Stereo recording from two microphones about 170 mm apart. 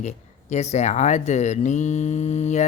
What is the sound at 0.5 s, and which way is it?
Speech, 40° left (ahead or behind).